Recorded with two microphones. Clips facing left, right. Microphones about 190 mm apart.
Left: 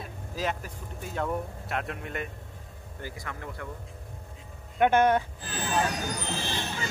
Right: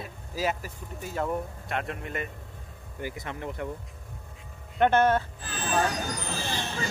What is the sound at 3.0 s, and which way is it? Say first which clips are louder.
Speech: right 4 dB; 20° right (ahead or behind).